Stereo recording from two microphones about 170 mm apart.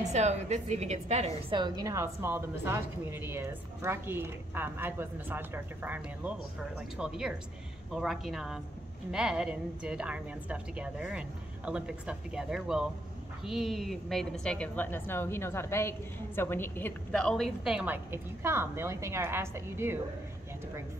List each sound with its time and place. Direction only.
0.0 s a woman's voice: 40° right (ahead or behind)
1.5 s a woman's voice: 25° right (ahead or behind)